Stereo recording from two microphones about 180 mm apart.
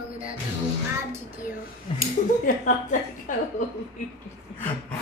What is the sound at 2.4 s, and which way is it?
A woman's voice, 45° left (ahead or behind).